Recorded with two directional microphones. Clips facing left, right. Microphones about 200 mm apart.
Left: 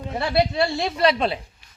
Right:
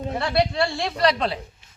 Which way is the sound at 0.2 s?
20° left (ahead or behind).